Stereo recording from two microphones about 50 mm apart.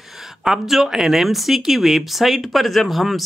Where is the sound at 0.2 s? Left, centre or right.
Centre.